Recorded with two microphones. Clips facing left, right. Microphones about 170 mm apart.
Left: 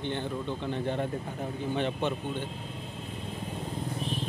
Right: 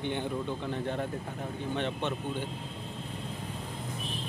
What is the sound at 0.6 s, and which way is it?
A man's voice, centre (ahead or behind).